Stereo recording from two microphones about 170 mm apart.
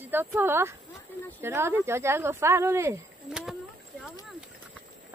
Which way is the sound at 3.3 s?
Centre (ahead or behind).